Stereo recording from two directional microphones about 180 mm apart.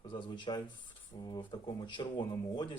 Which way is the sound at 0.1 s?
25° left (ahead or behind).